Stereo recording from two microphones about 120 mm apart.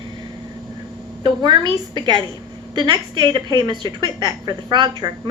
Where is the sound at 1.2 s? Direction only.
40° right (ahead or behind).